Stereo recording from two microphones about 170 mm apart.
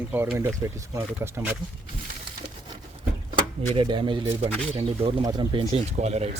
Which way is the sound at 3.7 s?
30° right (ahead or behind).